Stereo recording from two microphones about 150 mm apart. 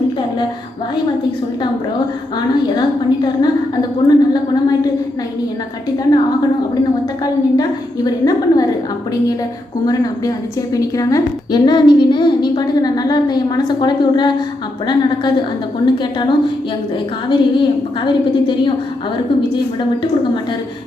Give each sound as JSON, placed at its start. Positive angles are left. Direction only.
{"t": 2.7, "sound": "a woman's voice", "side_deg": 30}
{"t": 7.5, "sound": "a woman's voice", "side_deg": 25}
{"t": 9.8, "sound": "a woman's voice", "side_deg": 25}